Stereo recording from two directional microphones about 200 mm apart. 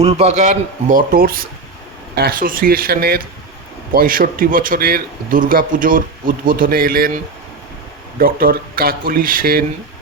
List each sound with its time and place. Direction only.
0.0 s a man's voice: 35° right (ahead or behind)
8.2 s a man's voice: 45° right (ahead or behind)